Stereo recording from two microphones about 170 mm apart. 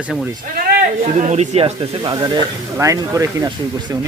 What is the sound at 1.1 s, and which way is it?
Speech, 45° right (ahead or behind).